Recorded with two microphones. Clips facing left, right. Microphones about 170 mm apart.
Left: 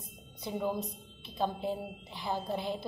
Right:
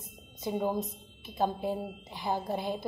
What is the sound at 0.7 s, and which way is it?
Speech, 20° right (ahead or behind).